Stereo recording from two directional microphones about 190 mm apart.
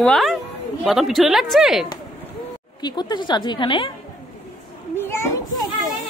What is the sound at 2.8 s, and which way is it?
A woman's voice, 20° left (ahead or behind).